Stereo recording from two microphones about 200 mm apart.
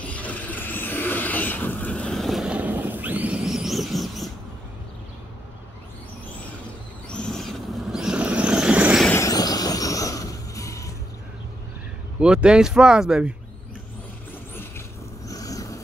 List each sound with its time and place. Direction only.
0.0 s vehicle: 5° left (ahead or behind)
7.1 s vehicle: centre (ahead or behind)
9.0 s vehicle: 15° left (ahead or behind)
12.2 s speech: 5° right (ahead or behind)
15.2 s vehicle: 15° left (ahead or behind)